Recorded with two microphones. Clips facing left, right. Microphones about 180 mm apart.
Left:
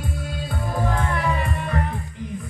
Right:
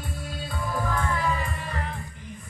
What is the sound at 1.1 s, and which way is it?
Music, 65° left (ahead or behind).